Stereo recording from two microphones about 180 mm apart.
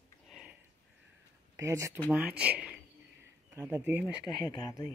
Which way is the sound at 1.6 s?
15° right (ahead or behind).